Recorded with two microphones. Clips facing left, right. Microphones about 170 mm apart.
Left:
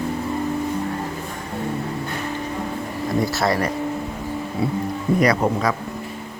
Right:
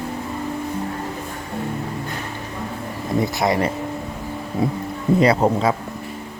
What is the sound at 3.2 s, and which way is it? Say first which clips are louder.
Speech: right 1 dB; 20° right (ahead or behind).